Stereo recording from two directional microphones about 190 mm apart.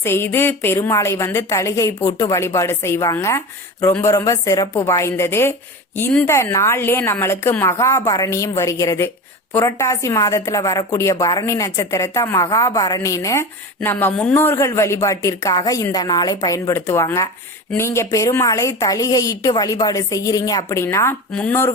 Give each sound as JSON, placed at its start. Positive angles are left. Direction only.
{"t": 0.0, "sound": "a woman's voice", "side_deg": 10}